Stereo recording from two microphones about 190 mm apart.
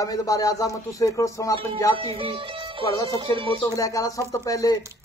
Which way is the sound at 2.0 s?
30° right (ahead or behind).